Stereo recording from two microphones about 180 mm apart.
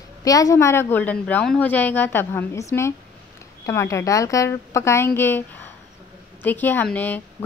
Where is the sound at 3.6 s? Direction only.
15° left (ahead or behind).